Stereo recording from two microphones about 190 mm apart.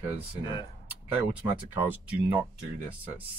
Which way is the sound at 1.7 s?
10° right (ahead or behind).